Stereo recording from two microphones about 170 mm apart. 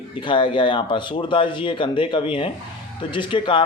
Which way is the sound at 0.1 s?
30° left (ahead or behind).